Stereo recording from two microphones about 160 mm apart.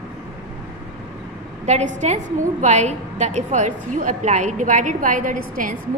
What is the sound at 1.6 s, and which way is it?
A woman's voice, 45° right (ahead or behind).